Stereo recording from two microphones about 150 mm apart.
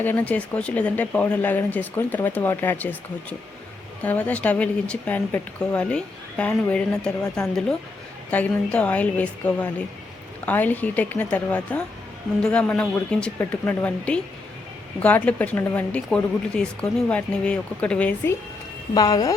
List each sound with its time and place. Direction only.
0.0 s speech: 10° left (ahead or behind)
18.9 s speech: 25° left (ahead or behind)